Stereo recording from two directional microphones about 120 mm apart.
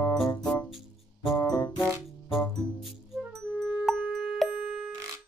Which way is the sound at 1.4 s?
35° left (ahead or behind).